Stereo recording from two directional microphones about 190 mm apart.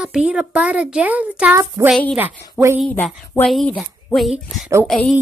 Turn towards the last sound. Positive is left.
turn(degrees=0)  # may be behind; listen again after turning